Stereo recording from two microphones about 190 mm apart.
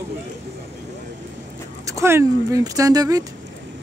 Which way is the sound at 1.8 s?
15° right (ahead or behind).